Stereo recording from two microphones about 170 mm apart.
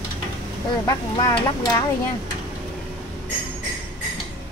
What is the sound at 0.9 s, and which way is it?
Speech, 20° left (ahead or behind).